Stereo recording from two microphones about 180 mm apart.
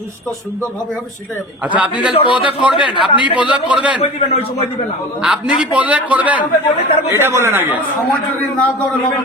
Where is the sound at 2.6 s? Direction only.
5° right (ahead or behind).